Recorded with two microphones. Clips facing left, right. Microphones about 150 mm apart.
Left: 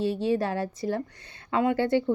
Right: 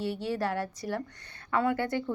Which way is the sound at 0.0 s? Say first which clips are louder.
Left 5 dB; 25° left (ahead or behind).